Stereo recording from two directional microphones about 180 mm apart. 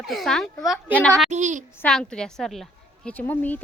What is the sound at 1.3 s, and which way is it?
Speech, 40° right (ahead or behind).